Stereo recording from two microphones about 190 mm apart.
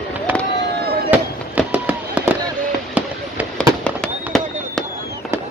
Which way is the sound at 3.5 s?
5° left (ahead or behind).